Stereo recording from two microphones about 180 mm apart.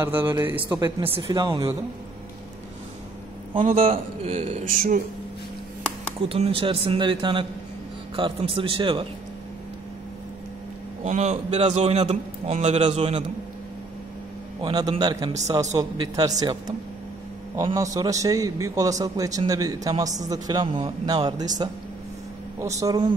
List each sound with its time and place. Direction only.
0.0 s a man's voice: 15° right (ahead or behind)
1.0 s a man's voice: 30° right (ahead or behind)
3.6 s a man's voice: 35° right (ahead or behind)
4.6 s speech: 50° right (ahead or behind)
6.2 s a man's voice: 30° right (ahead or behind)
11.1 s a man's voice: 40° right (ahead or behind)
14.6 s a man's voice: 25° right (ahead or behind)
17.7 s a man's voice: 20° right (ahead or behind)
22.8 s a man's voice: 20° right (ahead or behind)